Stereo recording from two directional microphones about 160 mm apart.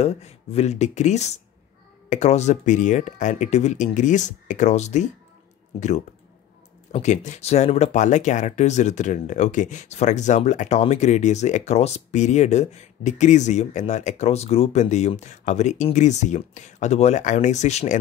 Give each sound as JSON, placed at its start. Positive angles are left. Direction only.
{"t": 0.0, "sound": "speech", "side_deg": 40}